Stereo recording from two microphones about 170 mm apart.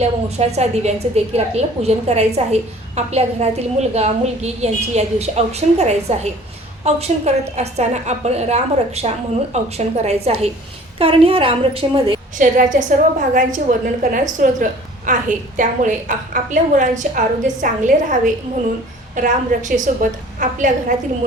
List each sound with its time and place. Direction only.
0.0 s a woman's voice: 40° right (ahead or behind)
12.4 s a woman's voice: 50° right (ahead or behind)